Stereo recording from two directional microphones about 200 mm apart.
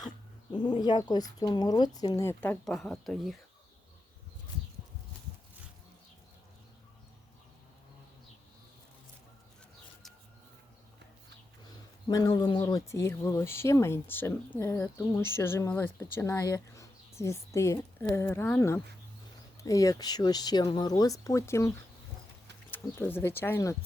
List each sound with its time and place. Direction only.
0.5 s speech: 20° left (ahead or behind); by 3.3 s centre (ahead or behind)
12.0 s speech: 20° left (ahead or behind)
22.7 s speech: 10° left (ahead or behind)